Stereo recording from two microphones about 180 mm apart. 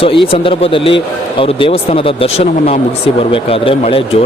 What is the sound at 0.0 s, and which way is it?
A man's voice, 30° left (ahead or behind).